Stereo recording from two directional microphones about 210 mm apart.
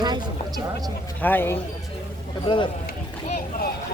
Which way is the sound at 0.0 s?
20° right (ahead or behind).